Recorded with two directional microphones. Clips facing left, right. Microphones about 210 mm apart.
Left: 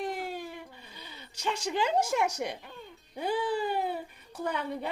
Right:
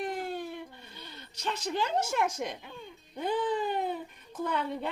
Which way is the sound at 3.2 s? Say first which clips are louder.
Even; 10° left (ahead or behind).